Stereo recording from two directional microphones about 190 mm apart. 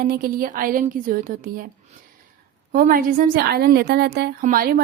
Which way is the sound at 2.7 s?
50° right (ahead or behind).